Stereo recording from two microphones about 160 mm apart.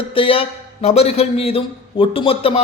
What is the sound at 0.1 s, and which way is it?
A man's voice, 35° left (ahead or behind).